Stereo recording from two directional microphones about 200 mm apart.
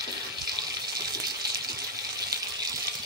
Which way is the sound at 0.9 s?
20° right (ahead or behind).